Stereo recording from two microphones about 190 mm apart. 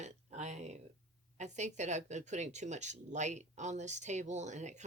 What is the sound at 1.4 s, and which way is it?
Speech, 40° right (ahead or behind).